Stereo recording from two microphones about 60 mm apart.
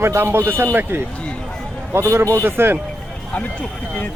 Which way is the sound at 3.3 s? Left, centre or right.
Left.